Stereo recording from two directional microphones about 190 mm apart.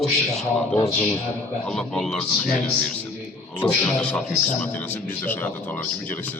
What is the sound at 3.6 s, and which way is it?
Speech, 5° left (ahead or behind).